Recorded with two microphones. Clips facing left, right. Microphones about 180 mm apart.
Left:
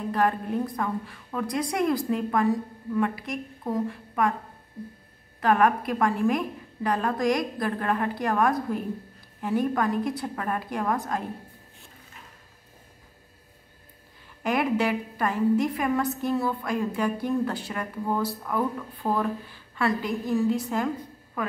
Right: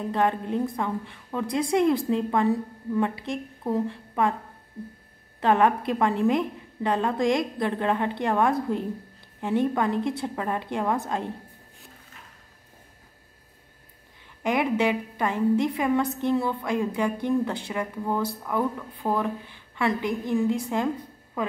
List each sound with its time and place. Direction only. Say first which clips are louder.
0.1 s a woman's voice: even; 20° right (ahead or behind)
5.4 s a woman's voice: right 1 dB; 25° right (ahead or behind)
14.4 s a woman's voice: right 1 dB; 20° right (ahead or behind)
18.0 s speech: left 1 dB; 5° left (ahead or behind)
18.5 s a woman's voice: right 2 dB; 15° right (ahead or behind)